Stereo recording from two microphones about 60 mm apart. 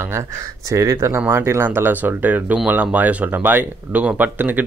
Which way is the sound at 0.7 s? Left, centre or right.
Right.